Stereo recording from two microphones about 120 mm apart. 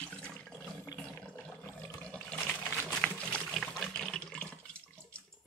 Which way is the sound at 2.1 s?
10° left (ahead or behind).